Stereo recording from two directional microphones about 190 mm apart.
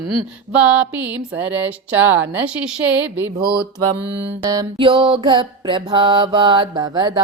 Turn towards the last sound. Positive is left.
turn(degrees=-20)  # may be behind; listen again after turning